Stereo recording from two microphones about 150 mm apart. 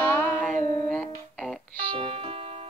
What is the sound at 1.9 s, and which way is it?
Music, 40° right (ahead or behind).